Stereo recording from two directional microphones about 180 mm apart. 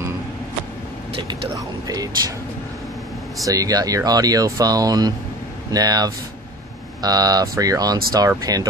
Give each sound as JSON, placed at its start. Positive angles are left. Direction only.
{"t": 1.4, "sound": "speech", "side_deg": -20}
{"t": 3.4, "sound": "speech", "side_deg": -20}